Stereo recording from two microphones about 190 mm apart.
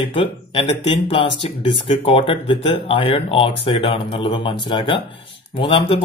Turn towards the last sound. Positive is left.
turn(degrees=30)  # may be behind; listen again after turning